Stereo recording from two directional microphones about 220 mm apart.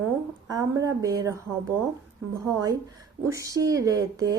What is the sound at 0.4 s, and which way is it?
Speech, 15° right (ahead or behind).